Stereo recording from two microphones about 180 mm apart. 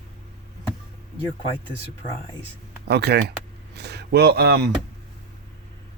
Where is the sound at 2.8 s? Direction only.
70° right (ahead or behind).